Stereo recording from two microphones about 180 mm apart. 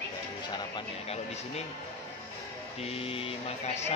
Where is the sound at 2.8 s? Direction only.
35° left (ahead or behind).